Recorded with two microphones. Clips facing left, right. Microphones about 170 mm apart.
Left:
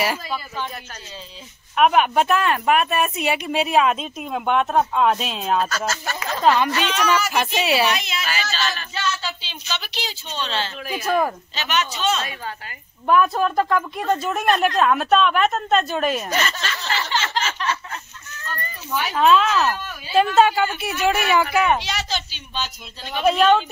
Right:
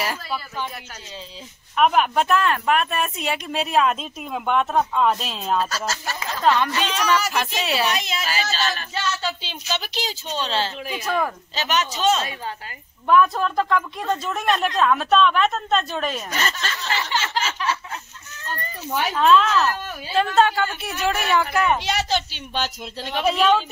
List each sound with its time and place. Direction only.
1.8 s speech: 5° left (ahead or behind)
5.7 s speech: 30° right (ahead or behind)
6.4 s speech: 5° left (ahead or behind)
7.9 s speech: 40° right (ahead or behind)
10.8 s a woman's voice: 20° right (ahead or behind)
11.1 s speech: 20° left (ahead or behind)
11.5 s speech: 40° right (ahead or behind)
12.2 s a woman's voice: 25° right (ahead or behind)
13.0 s speech: 5° left (ahead or behind)
16.9 s a sound: 10° right (ahead or behind)
19.1 s speech: 5° left (ahead or behind)
21.8 s a woman's voice: 55° right (ahead or behind); by 23.2 s 70° right (ahead or behind)
23.2 s speech: centre (ahead or behind)